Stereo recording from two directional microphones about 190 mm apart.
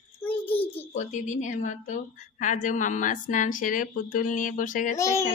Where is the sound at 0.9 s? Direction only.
40° left (ahead or behind).